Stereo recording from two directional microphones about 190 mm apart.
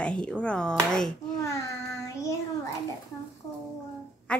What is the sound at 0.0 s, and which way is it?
A woman's voice, 5° left (ahead or behind).